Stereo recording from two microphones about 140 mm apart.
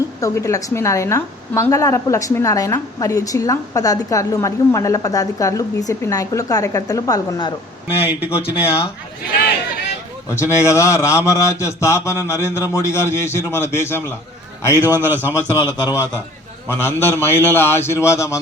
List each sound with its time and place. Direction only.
0.2 s a woman's voice: 20° left (ahead or behind)
8.0 s a man's voice: 10° right (ahead or behind)
8.3 s speech: 40° left (ahead or behind)
10.3 s a woman's voice: 20° left (ahead or behind)
14.7 s a man's voice: 15° right (ahead or behind)
15.3 s a woman's voice: 20° left (ahead or behind)
16.6 s a man's voice: 15° left (ahead or behind)